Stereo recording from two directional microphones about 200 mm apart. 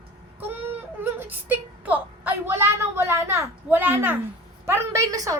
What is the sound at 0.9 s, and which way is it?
A woman's voice, 10° right (ahead or behind).